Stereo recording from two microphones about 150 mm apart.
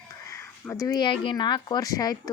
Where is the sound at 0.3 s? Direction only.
15° left (ahead or behind).